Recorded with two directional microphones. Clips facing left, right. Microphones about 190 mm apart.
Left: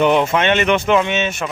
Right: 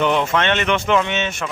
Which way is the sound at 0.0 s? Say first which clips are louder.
Left 3 dB; 15° left (ahead or behind).